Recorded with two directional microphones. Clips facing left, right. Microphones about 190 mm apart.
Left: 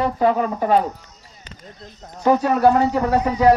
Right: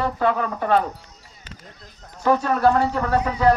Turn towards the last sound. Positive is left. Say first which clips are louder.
# left 3 dB
turn(degrees=15)  # may be behind; listen again after turning